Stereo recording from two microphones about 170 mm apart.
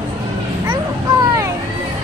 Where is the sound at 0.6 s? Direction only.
15° right (ahead or behind).